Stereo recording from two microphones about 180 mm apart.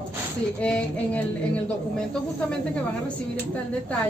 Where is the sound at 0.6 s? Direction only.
5° left (ahead or behind).